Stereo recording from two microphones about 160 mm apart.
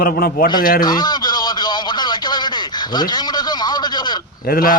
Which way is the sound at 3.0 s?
25° left (ahead or behind).